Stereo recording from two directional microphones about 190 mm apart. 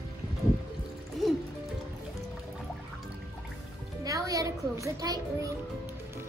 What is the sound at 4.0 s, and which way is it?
Children playing, 20° right (ahead or behind).